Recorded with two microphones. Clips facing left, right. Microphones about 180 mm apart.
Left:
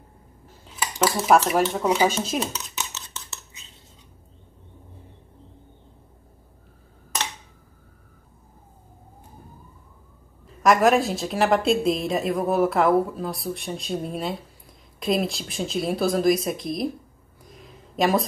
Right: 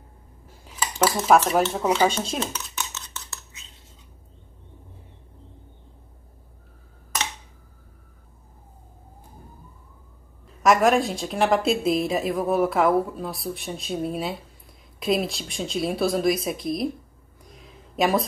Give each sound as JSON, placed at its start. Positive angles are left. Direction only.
{"t": 1.3, "sound": "a woman's voice", "side_deg": 0}
{"t": 2.3, "sound": "dishes", "side_deg": 15}
{"t": 10.6, "sound": "a woman's voice", "side_deg": 0}
{"t": 17.5, "sound": "a sound", "side_deg": 0}